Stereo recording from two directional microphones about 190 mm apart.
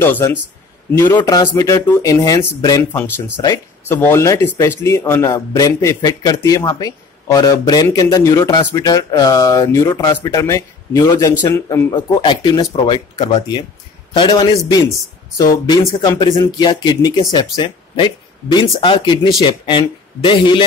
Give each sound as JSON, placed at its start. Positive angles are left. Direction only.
{"t": 0.0, "sound": "a man's voice", "side_deg": 10}